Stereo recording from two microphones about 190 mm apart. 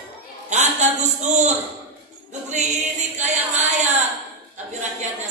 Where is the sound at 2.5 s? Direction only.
35° right (ahead or behind).